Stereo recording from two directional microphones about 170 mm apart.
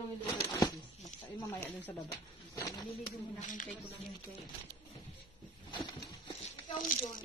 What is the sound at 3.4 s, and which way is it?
Speech, 50° left (ahead or behind).